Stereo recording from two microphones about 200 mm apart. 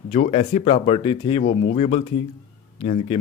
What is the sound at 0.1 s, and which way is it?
Speech, 35° left (ahead or behind).